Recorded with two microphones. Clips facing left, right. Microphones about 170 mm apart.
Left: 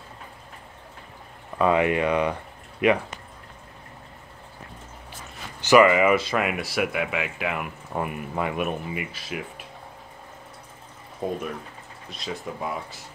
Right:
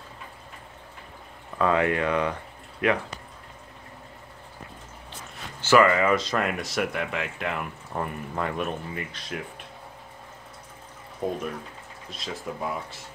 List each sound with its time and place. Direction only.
1.6 s speech: 15° left (ahead or behind)
5.6 s speech: 15° left (ahead or behind)
12.1 s speech: centre (ahead or behind)